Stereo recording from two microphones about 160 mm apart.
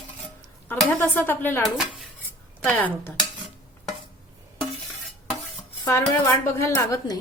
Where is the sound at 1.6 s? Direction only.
Centre (ahead or behind).